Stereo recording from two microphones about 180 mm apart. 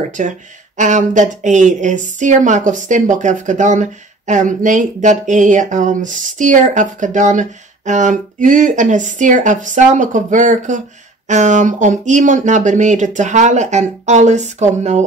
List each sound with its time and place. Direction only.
0.2 s speech: 45° right (ahead or behind)